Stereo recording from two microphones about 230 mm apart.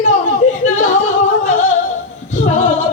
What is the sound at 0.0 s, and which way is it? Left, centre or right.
Yodeling, left.